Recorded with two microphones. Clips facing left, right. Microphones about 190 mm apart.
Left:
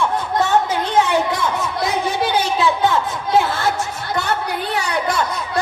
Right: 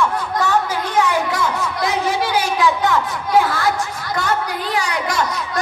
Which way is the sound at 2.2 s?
25° left (ahead or behind).